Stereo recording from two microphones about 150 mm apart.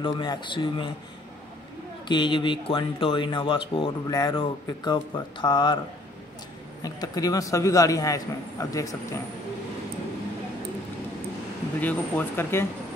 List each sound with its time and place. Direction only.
0.0 s speech: 30° left (ahead or behind)
2.0 s speech: 30° left (ahead or behind)
6.8 s a man's voice: 25° left (ahead or behind)
11.8 s speech: 10° left (ahead or behind)